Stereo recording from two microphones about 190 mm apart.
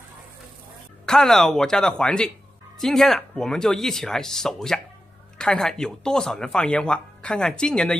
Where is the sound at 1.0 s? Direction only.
Centre (ahead or behind).